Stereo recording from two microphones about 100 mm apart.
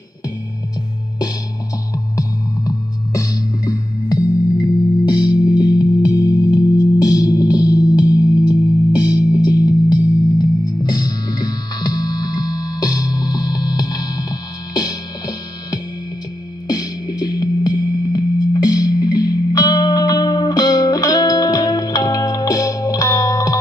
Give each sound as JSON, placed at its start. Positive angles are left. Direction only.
{"t": 2.1, "sound": "music", "side_deg": 35}